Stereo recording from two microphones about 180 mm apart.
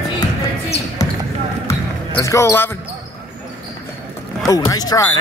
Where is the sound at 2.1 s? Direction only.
20° left (ahead or behind).